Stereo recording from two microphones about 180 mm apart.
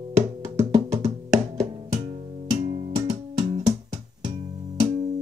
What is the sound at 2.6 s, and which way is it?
Music, 35° right (ahead or behind).